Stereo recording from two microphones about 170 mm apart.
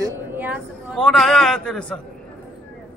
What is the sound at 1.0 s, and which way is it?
Speech, centre (ahead or behind).